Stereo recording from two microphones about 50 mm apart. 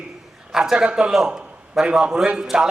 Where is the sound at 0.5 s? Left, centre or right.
Centre.